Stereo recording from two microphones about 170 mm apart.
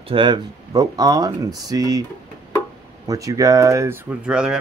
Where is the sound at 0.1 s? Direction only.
30° right (ahead or behind).